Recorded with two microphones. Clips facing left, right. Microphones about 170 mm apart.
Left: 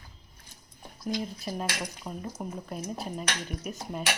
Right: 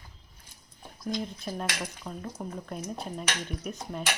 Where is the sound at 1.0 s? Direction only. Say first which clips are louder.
Left 1 dB; 5° left (ahead or behind).